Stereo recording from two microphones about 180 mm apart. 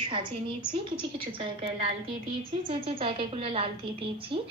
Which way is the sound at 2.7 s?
30° right (ahead or behind).